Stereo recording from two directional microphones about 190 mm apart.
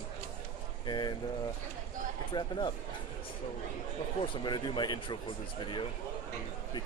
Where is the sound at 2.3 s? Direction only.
20° left (ahead or behind).